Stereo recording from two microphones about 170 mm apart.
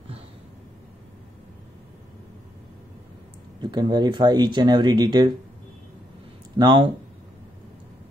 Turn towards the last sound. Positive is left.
turn(degrees=-25)  # may be behind; listen again after turning